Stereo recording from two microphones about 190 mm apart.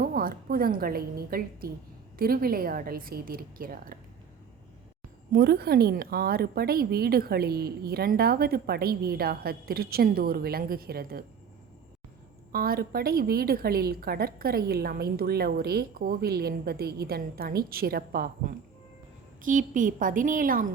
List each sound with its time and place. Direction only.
0.0 s a woman's voice: 50° right (ahead or behind)
5.3 s a woman's voice: 55° right (ahead or behind)
12.5 s a woman's voice: 50° right (ahead or behind)